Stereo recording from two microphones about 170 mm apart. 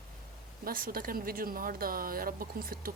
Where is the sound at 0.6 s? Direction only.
55° right (ahead or behind).